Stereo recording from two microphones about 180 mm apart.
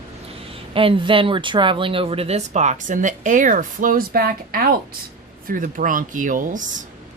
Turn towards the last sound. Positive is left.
turn(degrees=-45)  # may be behind; listen again after turning